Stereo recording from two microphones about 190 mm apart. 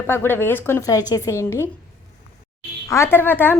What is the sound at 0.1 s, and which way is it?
A woman's voice, 10° left (ahead or behind).